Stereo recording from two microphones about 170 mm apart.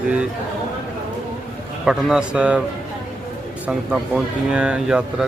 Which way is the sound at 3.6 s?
5° right (ahead or behind).